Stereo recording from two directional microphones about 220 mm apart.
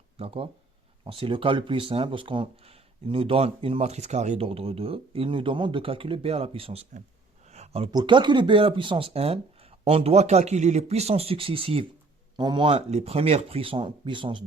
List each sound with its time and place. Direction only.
0.2 s speech: 25° right (ahead or behind)